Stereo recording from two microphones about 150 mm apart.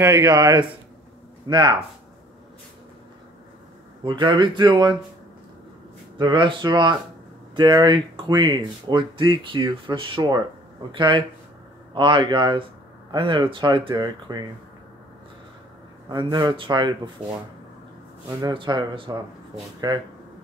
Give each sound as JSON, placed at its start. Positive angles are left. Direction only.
{"t": 0.0, "sound": "speech", "side_deg": -25}
{"t": 4.0, "sound": "speech", "side_deg": -30}
{"t": 6.1, "sound": "speech", "side_deg": -30}
{"t": 16.1, "sound": "speech", "side_deg": -30}
{"t": 18.4, "sound": "speech", "side_deg": -30}